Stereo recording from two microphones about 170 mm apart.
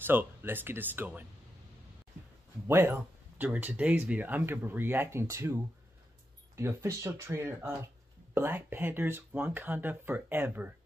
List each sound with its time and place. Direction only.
0.0 s speech: 10° right (ahead or behind)
2.7 s speech: 15° right (ahead or behind)